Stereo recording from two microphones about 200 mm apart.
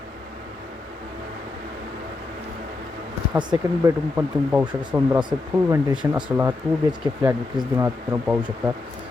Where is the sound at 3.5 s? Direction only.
10° right (ahead or behind).